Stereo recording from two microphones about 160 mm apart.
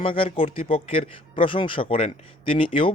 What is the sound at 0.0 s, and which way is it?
Speech, 35° left (ahead or behind).